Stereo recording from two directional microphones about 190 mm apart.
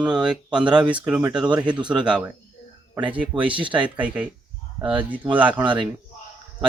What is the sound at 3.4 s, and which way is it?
Speech, 25° right (ahead or behind).